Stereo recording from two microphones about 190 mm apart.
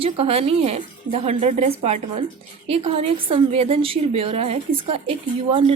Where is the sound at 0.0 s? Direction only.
30° right (ahead or behind).